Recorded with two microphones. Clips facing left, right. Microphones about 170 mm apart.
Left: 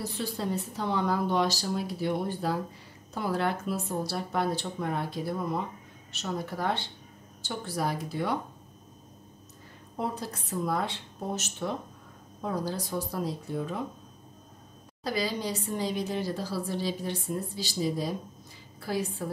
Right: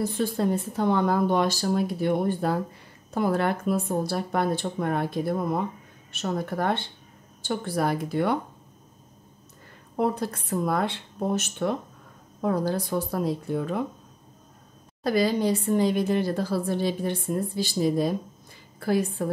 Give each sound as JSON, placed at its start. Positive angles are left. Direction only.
{"t": 0.0, "sound": "a woman's voice", "side_deg": -50}
{"t": 9.9, "sound": "a woman's voice", "side_deg": -60}
{"t": 15.0, "sound": "a woman's voice", "side_deg": -55}